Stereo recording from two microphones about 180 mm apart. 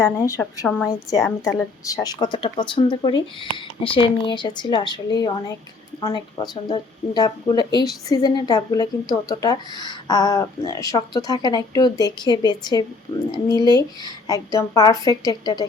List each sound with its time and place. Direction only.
0.0 s a woman's voice: 15° left (ahead or behind)
1.2 s a woman's voice: centre (ahead or behind)
1.8 s a woman's voice: 20° left (ahead or behind)